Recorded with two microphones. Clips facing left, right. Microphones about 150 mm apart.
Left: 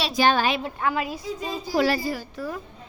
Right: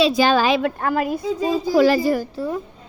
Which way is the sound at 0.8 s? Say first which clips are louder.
Right 5 dB; 45° right (ahead or behind).